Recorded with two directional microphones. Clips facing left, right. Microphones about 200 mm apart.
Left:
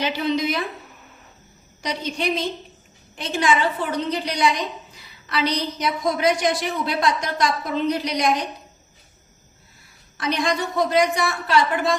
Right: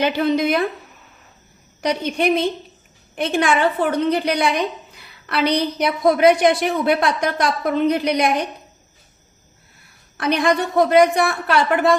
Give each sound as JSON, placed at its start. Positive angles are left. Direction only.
{"t": 0.0, "sound": "a woman's voice", "side_deg": -55}
{"t": 1.8, "sound": "a woman's voice", "side_deg": -60}
{"t": 10.2, "sound": "a woman's voice", "side_deg": -60}